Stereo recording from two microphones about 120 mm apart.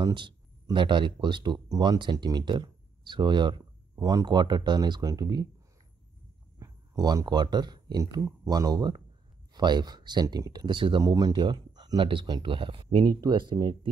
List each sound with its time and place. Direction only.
0.0 s speech: 40° right (ahead or behind)
6.6 s speech: 30° right (ahead or behind)